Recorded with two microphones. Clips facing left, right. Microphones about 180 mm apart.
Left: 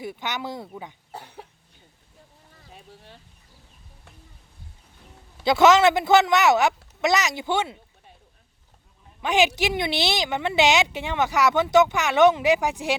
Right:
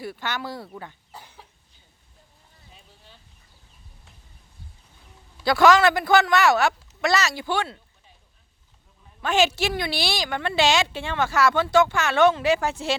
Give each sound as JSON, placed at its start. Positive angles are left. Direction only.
{"t": 0.0, "sound": "a woman's voice", "side_deg": 20}
{"t": 1.1, "sound": "cough", "side_deg": 65}
{"t": 2.7, "sound": "a sound", "side_deg": 60}
{"t": 5.4, "sound": "speech", "side_deg": 20}
{"t": 9.2, "sound": "a woman's voice", "side_deg": 15}